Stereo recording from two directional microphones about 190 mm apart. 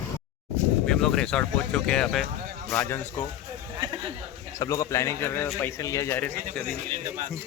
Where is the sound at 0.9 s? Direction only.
5° left (ahead or behind).